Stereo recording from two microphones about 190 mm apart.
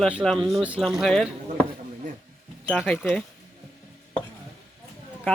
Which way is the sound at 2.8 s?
5° left (ahead or behind).